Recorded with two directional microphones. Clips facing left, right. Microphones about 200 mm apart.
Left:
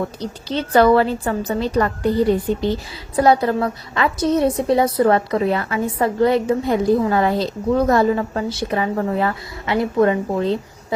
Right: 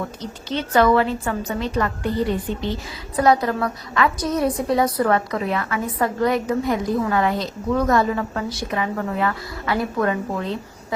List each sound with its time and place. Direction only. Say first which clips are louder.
0.2 s a woman's voice: left 3 dB; 35° left (ahead or behind)
3.2 s a woman's voice: left 3 dB; 30° left (ahead or behind)